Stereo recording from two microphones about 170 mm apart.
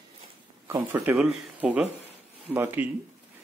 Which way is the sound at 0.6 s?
10° right (ahead or behind).